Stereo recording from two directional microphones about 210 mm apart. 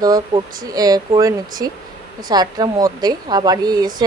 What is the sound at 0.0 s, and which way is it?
Speech, 15° right (ahead or behind).